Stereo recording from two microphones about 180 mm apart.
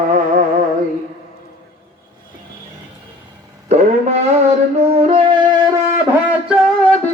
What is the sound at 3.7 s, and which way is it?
Music, 35° right (ahead or behind).